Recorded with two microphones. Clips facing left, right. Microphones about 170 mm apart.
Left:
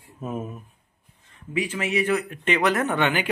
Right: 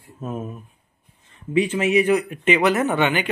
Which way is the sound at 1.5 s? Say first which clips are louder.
Right 7 dB; 25° right (ahead or behind).